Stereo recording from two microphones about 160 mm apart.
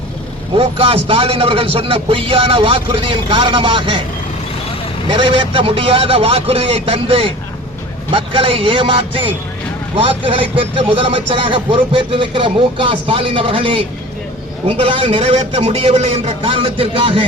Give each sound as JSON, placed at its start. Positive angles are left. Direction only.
{"t": 0.5, "sound": "speech", "side_deg": -35}
{"t": 5.1, "sound": "speech", "side_deg": -30}